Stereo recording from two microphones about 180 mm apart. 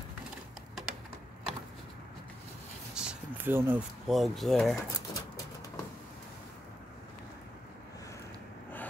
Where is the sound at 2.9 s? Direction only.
5° right (ahead or behind).